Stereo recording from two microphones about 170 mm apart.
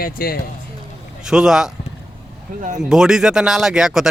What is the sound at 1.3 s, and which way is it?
Speech, 5° right (ahead or behind).